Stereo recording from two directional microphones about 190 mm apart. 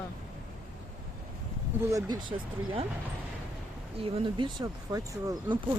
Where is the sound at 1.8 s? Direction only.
15° right (ahead or behind).